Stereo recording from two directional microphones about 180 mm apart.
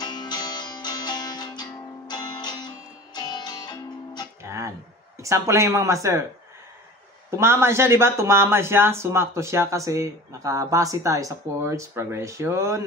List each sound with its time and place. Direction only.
0.0 s music: 25° left (ahead or behind)
4.4 s music: 15° right (ahead or behind)
5.2 s speech: 15° right (ahead or behind)
7.2 s speech: 15° right (ahead or behind)